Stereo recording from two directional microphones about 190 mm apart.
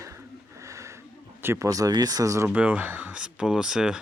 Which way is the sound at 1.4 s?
15° right (ahead or behind).